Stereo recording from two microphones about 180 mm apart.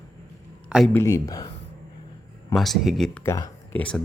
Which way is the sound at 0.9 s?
20° left (ahead or behind).